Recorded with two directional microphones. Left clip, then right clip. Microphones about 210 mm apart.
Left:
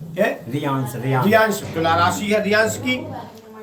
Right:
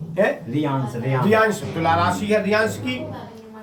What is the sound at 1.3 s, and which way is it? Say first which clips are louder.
Speech: left 1 dB; 15° right (ahead or behind).